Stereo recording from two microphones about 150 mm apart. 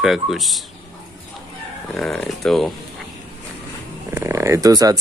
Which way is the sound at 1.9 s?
5° left (ahead or behind).